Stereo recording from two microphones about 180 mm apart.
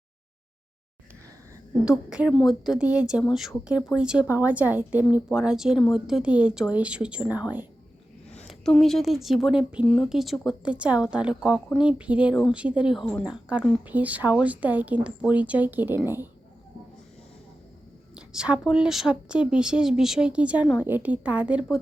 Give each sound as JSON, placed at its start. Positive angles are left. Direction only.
{"t": 1.8, "sound": "speech", "side_deg": -5}
{"t": 8.4, "sound": "speech", "side_deg": 5}
{"t": 18.2, "sound": "speech", "side_deg": -5}